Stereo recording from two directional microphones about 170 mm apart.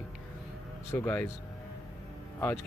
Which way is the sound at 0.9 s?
15° left (ahead or behind).